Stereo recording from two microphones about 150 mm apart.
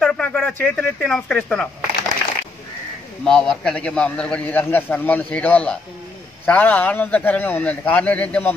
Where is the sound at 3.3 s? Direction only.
5° left (ahead or behind).